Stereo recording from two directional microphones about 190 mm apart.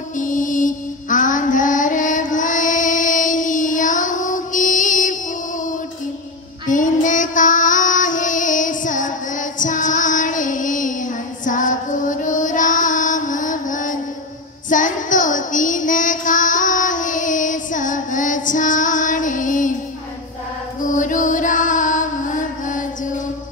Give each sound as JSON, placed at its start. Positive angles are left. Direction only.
{"t": 0.2, "sound": "mantra", "side_deg": 45}
{"t": 6.7, "sound": "female singing", "side_deg": 45}
{"t": 14.7, "sound": "child singing", "side_deg": 45}
{"t": 20.8, "sound": "music", "side_deg": 40}